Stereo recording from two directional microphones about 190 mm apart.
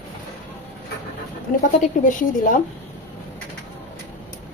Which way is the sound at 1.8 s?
45° left (ahead or behind).